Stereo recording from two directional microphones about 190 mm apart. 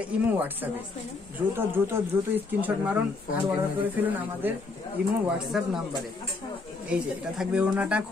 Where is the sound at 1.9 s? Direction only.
10° right (ahead or behind).